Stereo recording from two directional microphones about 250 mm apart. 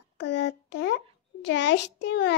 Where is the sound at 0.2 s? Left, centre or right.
Left.